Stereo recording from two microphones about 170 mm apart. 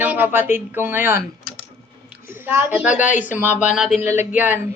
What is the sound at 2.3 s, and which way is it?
Speech, 15° right (ahead or behind).